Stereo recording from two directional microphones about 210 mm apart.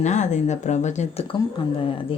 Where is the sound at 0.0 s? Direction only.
35° left (ahead or behind).